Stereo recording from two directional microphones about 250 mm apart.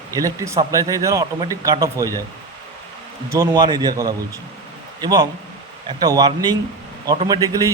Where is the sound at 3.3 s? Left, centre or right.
Centre.